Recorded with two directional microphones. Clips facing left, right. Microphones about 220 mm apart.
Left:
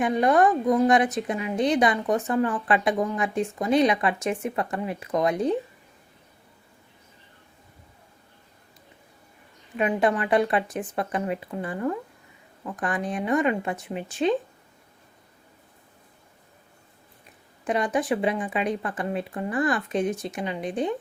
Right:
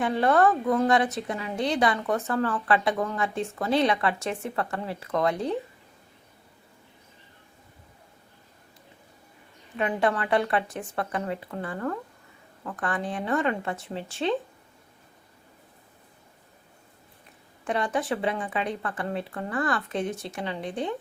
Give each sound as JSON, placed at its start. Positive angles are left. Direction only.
{"t": 0.0, "sound": "a woman's voice", "side_deg": 15}
{"t": 9.7, "sound": "a woman's voice", "side_deg": 20}
{"t": 17.7, "sound": "a woman's voice", "side_deg": 20}